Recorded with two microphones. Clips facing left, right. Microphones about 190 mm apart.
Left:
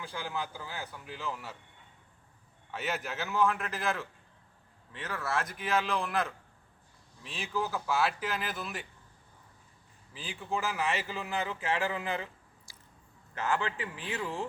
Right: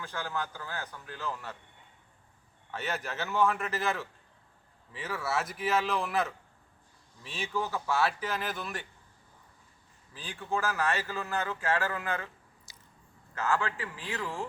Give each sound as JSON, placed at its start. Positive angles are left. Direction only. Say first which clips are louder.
{"t": 0.0, "sound": "speech", "louder": "right 1 dB", "side_deg": 10}
{"t": 2.7, "sound": "speech", "louder": "even", "side_deg": 0}
{"t": 10.2, "sound": "speech", "louder": "right 2 dB", "side_deg": 10}
{"t": 12.7, "sound": "squish", "louder": "left 1 dB", "side_deg": -20}
{"t": 13.3, "sound": "a man's voice", "louder": "right 1 dB", "side_deg": 20}